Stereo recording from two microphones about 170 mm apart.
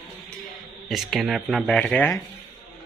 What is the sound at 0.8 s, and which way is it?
Speech, centre (ahead or behind).